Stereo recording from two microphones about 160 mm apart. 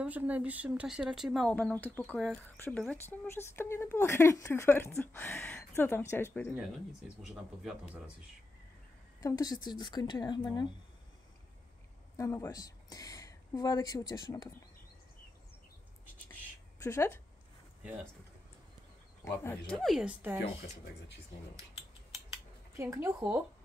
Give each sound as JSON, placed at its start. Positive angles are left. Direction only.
{"t": 0.0, "sound": "speech", "side_deg": -10}
{"t": 6.5, "sound": "speech", "side_deg": -5}
{"t": 9.2, "sound": "a woman's voice", "side_deg": 25}
{"t": 12.2, "sound": "speech", "side_deg": 20}
{"t": 16.8, "sound": "speech", "side_deg": 15}
{"t": 19.2, "sound": "speech", "side_deg": 15}
{"t": 22.3, "sound": "cutlery", "side_deg": -20}
{"t": 23.0, "sound": "speech", "side_deg": -10}